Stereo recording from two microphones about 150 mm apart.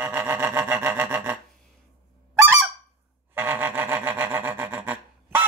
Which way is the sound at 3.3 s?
15° right (ahead or behind).